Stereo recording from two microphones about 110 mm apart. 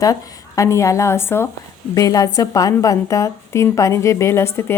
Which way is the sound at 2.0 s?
30° left (ahead or behind).